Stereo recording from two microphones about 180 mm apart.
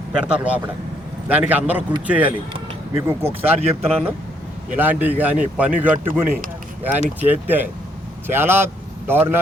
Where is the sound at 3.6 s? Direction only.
35° right (ahead or behind).